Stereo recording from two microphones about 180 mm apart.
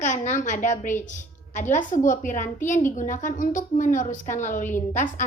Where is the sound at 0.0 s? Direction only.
45° left (ahead or behind).